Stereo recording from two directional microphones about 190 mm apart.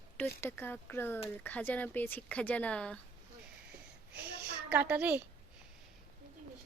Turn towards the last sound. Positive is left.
turn(degrees=-10)  # may be behind; listen again after turning